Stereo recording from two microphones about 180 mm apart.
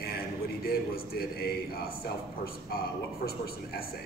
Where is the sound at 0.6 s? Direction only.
55° left (ahead or behind).